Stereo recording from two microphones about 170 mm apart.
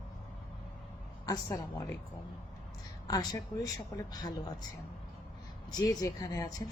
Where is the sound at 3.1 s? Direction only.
20° left (ahead or behind).